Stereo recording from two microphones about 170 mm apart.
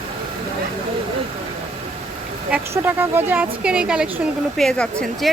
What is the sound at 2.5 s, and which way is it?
A woman's voice, 10° right (ahead or behind).